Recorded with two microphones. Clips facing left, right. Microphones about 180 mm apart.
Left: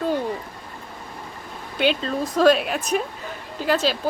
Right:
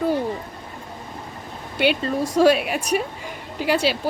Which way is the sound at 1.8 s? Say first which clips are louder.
Right 1 dB; 10° right (ahead or behind).